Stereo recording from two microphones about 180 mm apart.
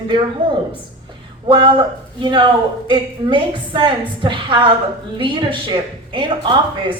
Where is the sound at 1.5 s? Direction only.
25° right (ahead or behind).